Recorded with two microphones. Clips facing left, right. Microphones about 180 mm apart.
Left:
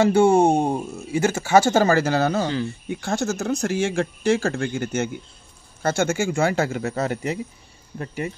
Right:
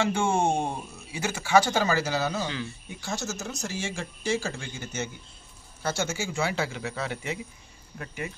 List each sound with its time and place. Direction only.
0.0 s speech: 40° left (ahead or behind)